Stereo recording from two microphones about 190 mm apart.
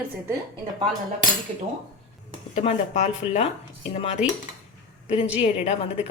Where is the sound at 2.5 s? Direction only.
35° left (ahead or behind).